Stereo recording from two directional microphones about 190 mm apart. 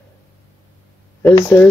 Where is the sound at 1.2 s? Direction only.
15° left (ahead or behind).